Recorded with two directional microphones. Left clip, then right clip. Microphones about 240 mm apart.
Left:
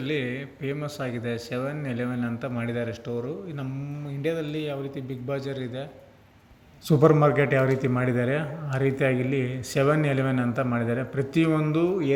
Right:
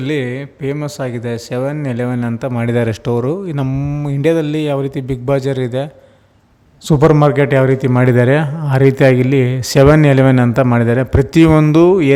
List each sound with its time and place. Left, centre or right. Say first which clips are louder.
0.0 s speech: right 10 dB; right
6.8 s speech: right 9 dB; right